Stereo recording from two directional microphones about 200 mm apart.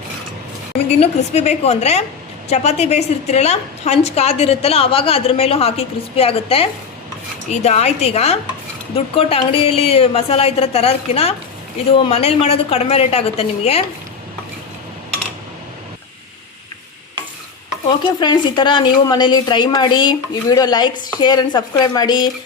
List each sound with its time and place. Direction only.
0.9 s a woman's voice: 30° left (ahead or behind)
17.8 s a woman's voice: 20° left (ahead or behind)